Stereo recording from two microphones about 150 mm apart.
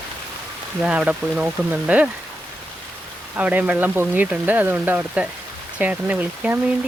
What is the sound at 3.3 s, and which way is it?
Speech, 10° right (ahead or behind).